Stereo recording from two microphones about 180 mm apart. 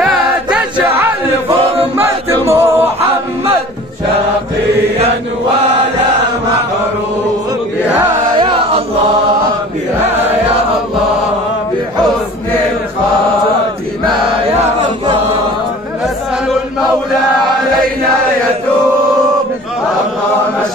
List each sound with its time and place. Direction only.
0.0 s choir: 5° right (ahead or behind)
1.5 s choir: 30° right (ahead or behind)
2.0 s music: 15° right (ahead or behind)
8.4 s chant: 30° right (ahead or behind)
14.6 s chant: 30° right (ahead or behind)